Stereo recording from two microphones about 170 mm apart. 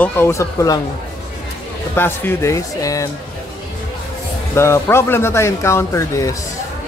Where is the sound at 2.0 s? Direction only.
15° left (ahead or behind).